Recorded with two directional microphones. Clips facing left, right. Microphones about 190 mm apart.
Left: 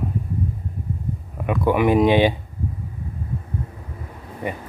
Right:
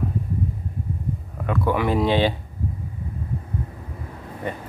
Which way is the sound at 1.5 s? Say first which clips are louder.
Left 4 dB; 15° left (ahead or behind).